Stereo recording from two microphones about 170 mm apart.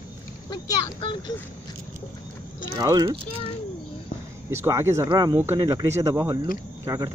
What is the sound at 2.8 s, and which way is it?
Speech, 20° right (ahead or behind).